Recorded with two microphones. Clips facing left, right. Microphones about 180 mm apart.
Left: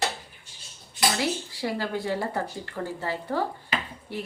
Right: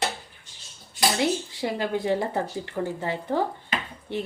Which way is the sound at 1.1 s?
20° right (ahead or behind).